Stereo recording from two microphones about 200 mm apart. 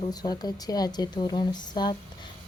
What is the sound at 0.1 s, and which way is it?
Speech, 20° left (ahead or behind).